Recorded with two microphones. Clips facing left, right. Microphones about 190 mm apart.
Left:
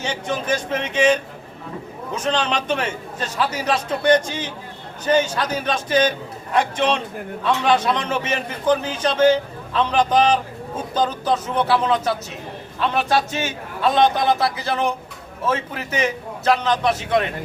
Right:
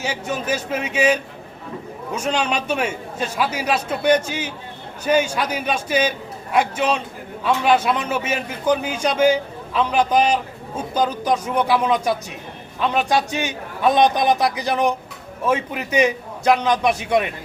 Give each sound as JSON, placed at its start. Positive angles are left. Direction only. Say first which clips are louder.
{"t": 0.0, "sound": "a man's voice", "louder": "even", "side_deg": -10}